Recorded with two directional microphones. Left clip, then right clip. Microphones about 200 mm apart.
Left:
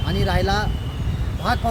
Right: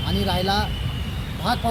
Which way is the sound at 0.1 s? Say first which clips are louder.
Left 1 dB; centre (ahead or behind).